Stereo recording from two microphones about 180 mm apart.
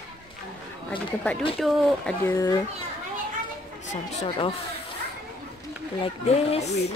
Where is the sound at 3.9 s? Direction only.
35° left (ahead or behind).